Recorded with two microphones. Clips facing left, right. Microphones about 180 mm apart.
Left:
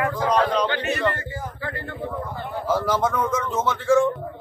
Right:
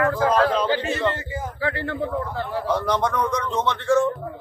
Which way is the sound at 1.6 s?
75° right (ahead or behind).